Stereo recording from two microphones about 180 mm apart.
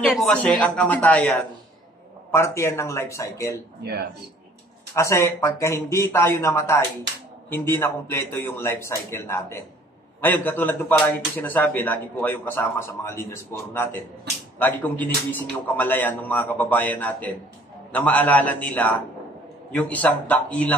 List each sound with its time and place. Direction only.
0.1 s a man's voice: 5° left (ahead or behind)
2.3 s a man's voice: 15° left (ahead or behind)
4.9 s a man's voice: 15° left (ahead or behind)